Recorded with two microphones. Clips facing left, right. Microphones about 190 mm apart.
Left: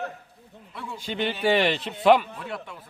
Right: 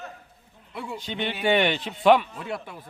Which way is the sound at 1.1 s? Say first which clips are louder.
Left 1 dB; 5° left (ahead or behind).